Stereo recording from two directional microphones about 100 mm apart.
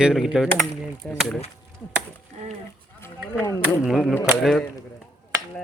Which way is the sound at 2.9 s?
25° left (ahead or behind).